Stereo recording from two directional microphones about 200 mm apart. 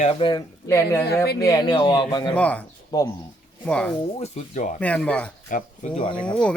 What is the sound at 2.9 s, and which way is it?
Speech, 20° left (ahead or behind).